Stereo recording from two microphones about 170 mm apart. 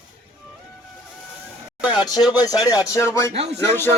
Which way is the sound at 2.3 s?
20° left (ahead or behind).